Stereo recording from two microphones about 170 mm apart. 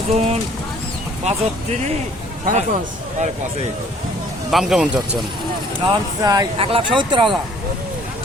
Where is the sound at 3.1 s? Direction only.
45° right (ahead or behind).